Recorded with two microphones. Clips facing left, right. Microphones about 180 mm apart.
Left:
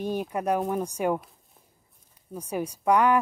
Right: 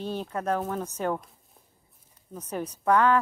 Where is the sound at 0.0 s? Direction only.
15° left (ahead or behind).